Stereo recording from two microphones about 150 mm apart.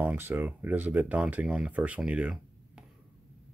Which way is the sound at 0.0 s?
10° right (ahead or behind).